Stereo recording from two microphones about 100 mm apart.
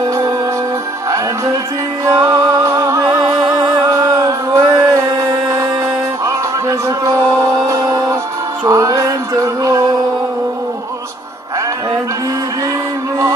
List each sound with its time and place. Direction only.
2.0 s music: 35° right (ahead or behind)